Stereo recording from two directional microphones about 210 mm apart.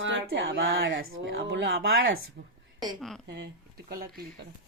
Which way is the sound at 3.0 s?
Centre (ahead or behind).